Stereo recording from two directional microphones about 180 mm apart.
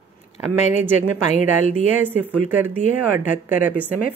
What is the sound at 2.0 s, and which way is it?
Speech, 10° right (ahead or behind).